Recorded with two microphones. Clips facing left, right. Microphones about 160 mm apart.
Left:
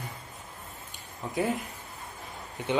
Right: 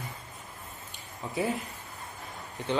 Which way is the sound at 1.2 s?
Centre (ahead or behind).